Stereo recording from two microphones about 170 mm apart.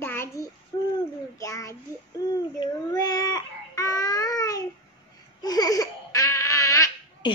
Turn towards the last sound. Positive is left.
turn(degrees=20)  # may be behind; listen again after turning